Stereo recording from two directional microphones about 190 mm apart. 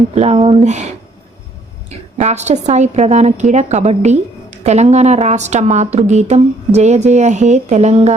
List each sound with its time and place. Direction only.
0.1 s a woman's voice: 35° right (ahead or behind)
2.2 s a woman's voice: 35° right (ahead or behind)